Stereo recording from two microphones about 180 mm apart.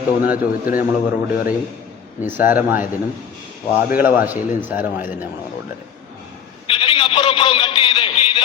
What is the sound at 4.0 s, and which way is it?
Speech, 10° right (ahead or behind).